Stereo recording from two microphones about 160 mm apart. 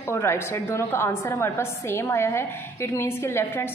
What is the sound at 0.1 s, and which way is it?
A woman's voice, 15° left (ahead or behind).